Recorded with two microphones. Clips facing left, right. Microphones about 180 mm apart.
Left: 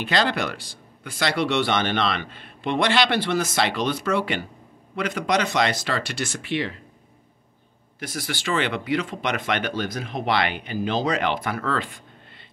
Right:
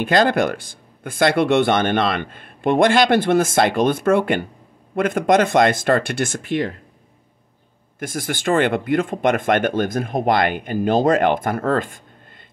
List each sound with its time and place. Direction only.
0.0 s speech: 50° right (ahead or behind)
8.0 s speech: 50° right (ahead or behind)